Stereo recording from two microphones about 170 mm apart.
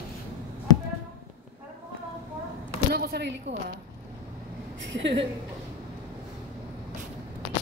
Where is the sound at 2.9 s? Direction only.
65° right (ahead or behind); by 3.7 s 85° right.